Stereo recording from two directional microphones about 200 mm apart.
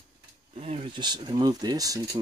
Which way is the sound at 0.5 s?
30° right (ahead or behind).